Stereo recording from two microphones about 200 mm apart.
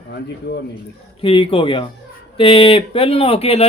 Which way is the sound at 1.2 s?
25° left (ahead or behind).